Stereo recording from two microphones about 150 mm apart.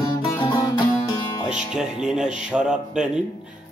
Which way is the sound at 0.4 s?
30° left (ahead or behind).